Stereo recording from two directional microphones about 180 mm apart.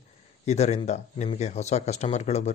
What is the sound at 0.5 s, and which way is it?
Speech, 35° left (ahead or behind).